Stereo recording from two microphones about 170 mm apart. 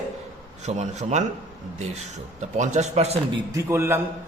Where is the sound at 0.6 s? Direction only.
40° right (ahead or behind).